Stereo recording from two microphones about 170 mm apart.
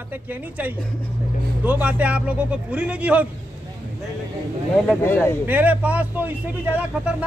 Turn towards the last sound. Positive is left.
turn(degrees=-10)  # may be behind; listen again after turning